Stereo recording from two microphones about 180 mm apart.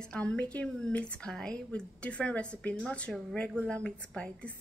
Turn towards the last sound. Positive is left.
turn(degrees=5)  # may be behind; listen again after turning